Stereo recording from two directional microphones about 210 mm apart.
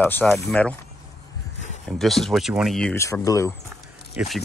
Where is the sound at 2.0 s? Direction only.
Centre (ahead or behind).